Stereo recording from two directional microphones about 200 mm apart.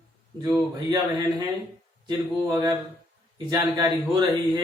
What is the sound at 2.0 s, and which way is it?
A man's voice, 20° right (ahead or behind).